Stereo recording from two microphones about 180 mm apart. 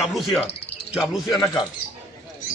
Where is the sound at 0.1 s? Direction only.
Centre (ahead or behind).